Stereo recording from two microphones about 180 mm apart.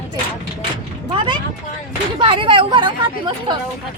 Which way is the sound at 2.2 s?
25° right (ahead or behind).